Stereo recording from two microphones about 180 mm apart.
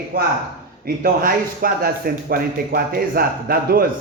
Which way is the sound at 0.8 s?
55° right (ahead or behind).